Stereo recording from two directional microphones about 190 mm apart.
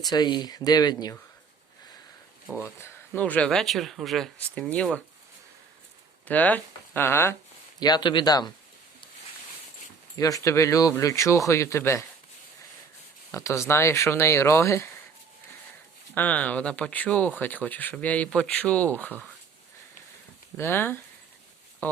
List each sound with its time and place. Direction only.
0.1 s speech: 20° left (ahead or behind)
2.7 s speech: 10° left (ahead or behind)
6.2 s speech: 10° left (ahead or behind)
10.2 s speech: 20° left (ahead or behind)
13.3 s speech: 15° left (ahead or behind)
16.1 s speech: 10° left (ahead or behind)
20.6 s speech: 10° left (ahead or behind)